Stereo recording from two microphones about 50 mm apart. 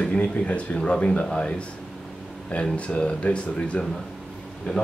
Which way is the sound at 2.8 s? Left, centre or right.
Left.